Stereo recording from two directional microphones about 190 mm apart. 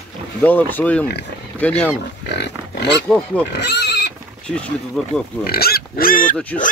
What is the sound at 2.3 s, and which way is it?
Speech, 65° left (ahead or behind).